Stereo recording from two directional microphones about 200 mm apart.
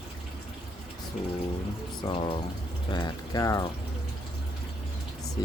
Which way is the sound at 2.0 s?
25° left (ahead or behind).